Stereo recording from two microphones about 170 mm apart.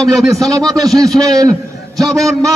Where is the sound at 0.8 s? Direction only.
20° right (ahead or behind).